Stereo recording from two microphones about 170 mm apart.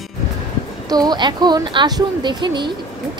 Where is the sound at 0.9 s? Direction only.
25° right (ahead or behind).